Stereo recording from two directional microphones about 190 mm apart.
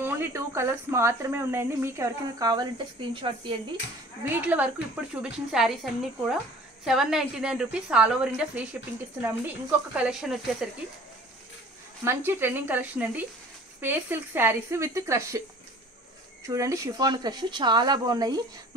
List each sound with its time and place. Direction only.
0.0 s speech: 10° right (ahead or behind)
4.2 s a woman's voice: 10° right (ahead or behind)
6.8 s a woman's voice: centre (ahead or behind)
12.0 s speech: 10° right (ahead or behind)
16.4 s speech: 15° right (ahead or behind)